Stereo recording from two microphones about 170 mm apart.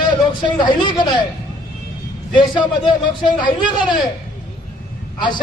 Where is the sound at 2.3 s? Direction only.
30° left (ahead or behind).